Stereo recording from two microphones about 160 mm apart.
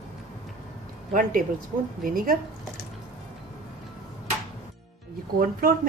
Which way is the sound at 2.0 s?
60° right (ahead or behind).